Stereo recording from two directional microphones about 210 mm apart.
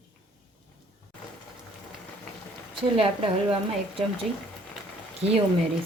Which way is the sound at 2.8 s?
25° right (ahead or behind).